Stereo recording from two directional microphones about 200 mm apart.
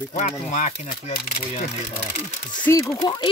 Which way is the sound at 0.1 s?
40° left (ahead or behind).